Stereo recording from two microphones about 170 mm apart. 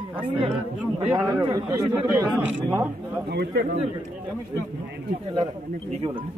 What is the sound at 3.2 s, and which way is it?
Speech, 75° right (ahead or behind).